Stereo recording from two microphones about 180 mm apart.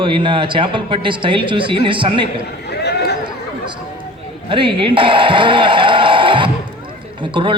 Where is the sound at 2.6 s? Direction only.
65° left (ahead or behind).